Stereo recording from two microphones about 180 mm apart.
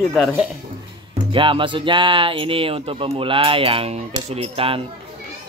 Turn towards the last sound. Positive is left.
turn(degrees=-30)  # may be behind; listen again after turning